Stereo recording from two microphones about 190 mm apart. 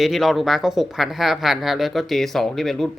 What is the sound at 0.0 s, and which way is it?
Speech, centre (ahead or behind).